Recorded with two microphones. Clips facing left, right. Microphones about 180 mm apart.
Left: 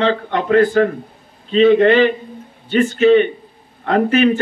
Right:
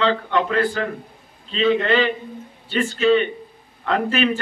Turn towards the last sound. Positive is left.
turn(degrees=45)  # may be behind; listen again after turning